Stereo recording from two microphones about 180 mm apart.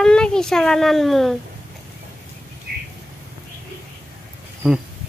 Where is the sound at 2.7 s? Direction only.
65° right (ahead or behind).